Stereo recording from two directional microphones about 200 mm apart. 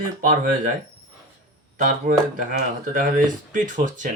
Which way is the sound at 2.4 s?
40° right (ahead or behind).